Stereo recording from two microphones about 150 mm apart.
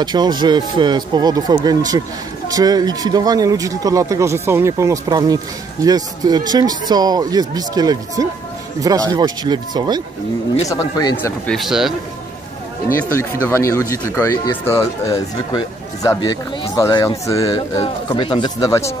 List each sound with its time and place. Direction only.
0.0 s speech: 30° right (ahead or behind)
10.7 s speech: 25° left (ahead or behind)
11.4 s speech: centre (ahead or behind)
13.1 s speech: 15° left (ahead or behind)
18.0 s speech: 35° left (ahead or behind)
18.6 s speech: 20° left (ahead or behind)